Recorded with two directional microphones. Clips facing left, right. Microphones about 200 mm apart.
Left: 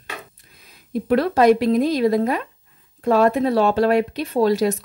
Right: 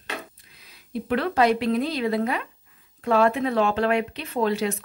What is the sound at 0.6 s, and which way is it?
A woman's voice, 45° left (ahead or behind).